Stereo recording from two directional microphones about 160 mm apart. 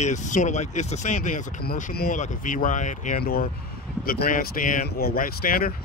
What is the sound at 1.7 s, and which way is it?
Speech, 65° left (ahead or behind).